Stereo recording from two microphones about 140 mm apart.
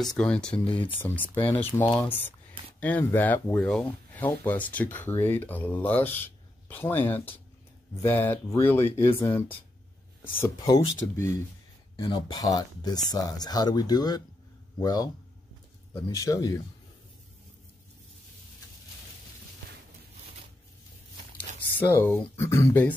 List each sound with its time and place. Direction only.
0.2 s speech: 5° left (ahead or behind); by 15.0 s 25° left (ahead or behind)
16.1 s speech: 25° left (ahead or behind)
21.7 s speech: 15° left (ahead or behind)